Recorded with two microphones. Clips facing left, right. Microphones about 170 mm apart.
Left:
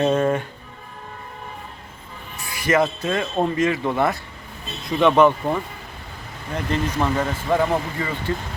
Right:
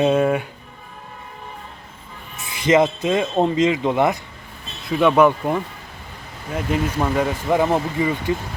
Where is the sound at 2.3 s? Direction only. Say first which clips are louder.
Right 4 dB; 20° right (ahead or behind).